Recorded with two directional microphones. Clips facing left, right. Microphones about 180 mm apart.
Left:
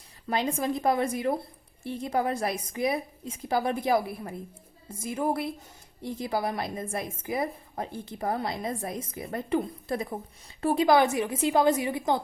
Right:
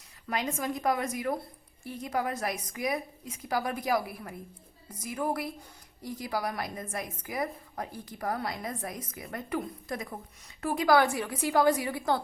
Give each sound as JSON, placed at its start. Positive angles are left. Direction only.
{"t": 0.3, "sound": "a woman's voice", "side_deg": 30}